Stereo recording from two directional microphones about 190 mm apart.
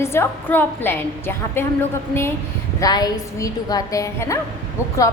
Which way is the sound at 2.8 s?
20° left (ahead or behind).